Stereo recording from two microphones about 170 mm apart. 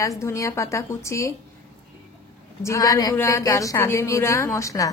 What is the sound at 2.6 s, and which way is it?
A woman's voice, 20° left (ahead or behind).